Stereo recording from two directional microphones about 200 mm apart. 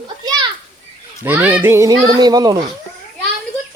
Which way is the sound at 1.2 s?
10° right (ahead or behind).